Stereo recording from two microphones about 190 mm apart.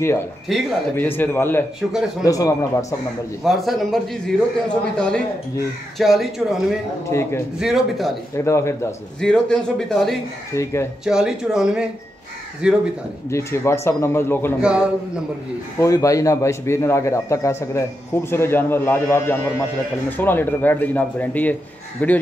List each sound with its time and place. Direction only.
0.5 s a man's voice: centre (ahead or behind)
0.9 s a man's voice: 10° left (ahead or behind)
1.8 s a man's voice: centre (ahead or behind)
2.2 s a man's voice: 20° left (ahead or behind)
3.4 s a man's voice: centre (ahead or behind)
7.1 s a man's voice: 15° left (ahead or behind)
7.5 s a man's voice: centre (ahead or behind)
8.5 s a man's voice: 15° left (ahead or behind)
9.2 s a man's voice: 5° left (ahead or behind)
10.5 s a man's voice: 15° left (ahead or behind)
11.1 s a man's voice: 5° right (ahead or behind)
13.3 s a man's voice: 15° left (ahead or behind)
14.6 s a man's voice: 5° right (ahead or behind)
15.8 s a man's voice: 15° left (ahead or behind)